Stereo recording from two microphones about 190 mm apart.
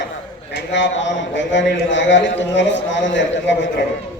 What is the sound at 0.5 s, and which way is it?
A man's voice, 70° left (ahead or behind).